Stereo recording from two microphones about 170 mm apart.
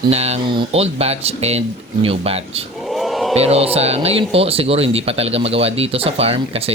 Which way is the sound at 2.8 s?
Centre (ahead or behind).